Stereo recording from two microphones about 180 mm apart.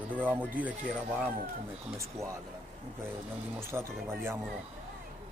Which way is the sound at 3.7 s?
15° right (ahead or behind).